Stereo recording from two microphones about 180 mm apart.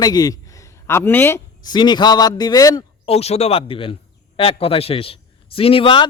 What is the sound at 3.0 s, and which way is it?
A man's voice, 35° left (ahead or behind).